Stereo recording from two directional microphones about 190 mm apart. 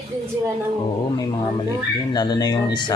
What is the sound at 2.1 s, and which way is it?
Speech, 20° left (ahead or behind).